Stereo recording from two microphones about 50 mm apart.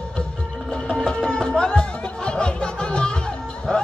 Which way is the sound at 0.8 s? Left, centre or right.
Centre.